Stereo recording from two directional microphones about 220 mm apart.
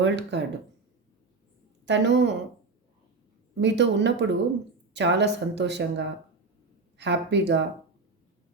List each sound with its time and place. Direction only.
0.0 s speech: 50° right (ahead or behind)
1.8 s speech: 50° right (ahead or behind)
3.6 s speech: 50° right (ahead or behind)